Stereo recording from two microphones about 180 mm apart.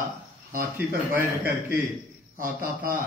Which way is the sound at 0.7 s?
10° right (ahead or behind).